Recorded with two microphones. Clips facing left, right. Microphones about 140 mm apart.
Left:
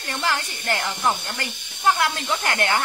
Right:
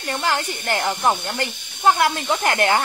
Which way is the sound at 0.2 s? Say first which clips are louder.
Right 1 dB; 25° right (ahead or behind).